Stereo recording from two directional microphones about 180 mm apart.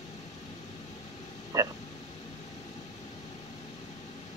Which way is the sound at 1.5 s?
20° right (ahead or behind).